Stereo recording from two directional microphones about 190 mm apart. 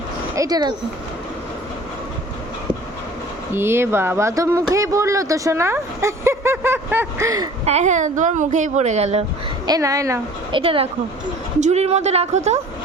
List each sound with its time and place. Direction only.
0.3 s speech: 20° right (ahead or behind)
3.5 s speech: 10° right (ahead or behind)
7.6 s speech: 35° right (ahead or behind)
9.6 s speech: 20° right (ahead or behind)
10.6 s speech: 30° right (ahead or behind)